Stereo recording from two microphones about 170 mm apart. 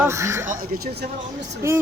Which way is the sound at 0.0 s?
15° right (ahead or behind).